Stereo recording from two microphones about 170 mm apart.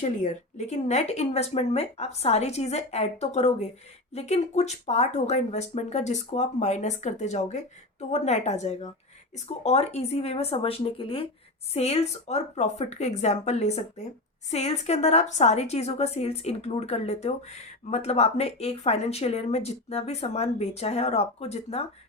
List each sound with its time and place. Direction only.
0.0 s speech: 45° left (ahead or behind)